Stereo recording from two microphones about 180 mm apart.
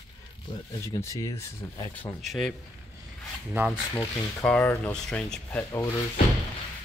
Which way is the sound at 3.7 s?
5° left (ahead or behind).